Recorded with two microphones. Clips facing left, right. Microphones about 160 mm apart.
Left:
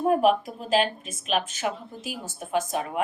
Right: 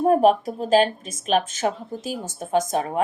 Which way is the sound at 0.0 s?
40° right (ahead or behind).